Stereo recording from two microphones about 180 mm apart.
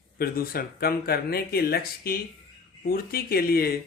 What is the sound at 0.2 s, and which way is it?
Speech, 55° left (ahead or behind).